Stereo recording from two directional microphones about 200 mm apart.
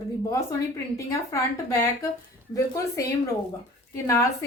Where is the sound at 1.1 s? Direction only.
15° left (ahead or behind).